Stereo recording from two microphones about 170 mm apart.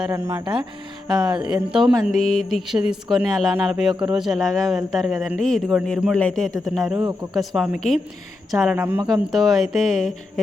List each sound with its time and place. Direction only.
0.1 s speech: 20° right (ahead or behind)
1.0 s speech: 5° right (ahead or behind)